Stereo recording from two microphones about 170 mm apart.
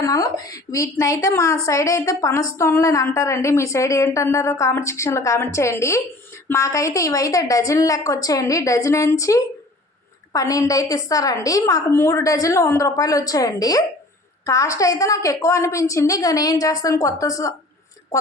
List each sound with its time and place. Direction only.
0.0 s a woman's voice: 20° left (ahead or behind)